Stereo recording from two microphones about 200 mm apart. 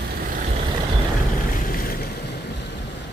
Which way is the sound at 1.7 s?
45° left (ahead or behind).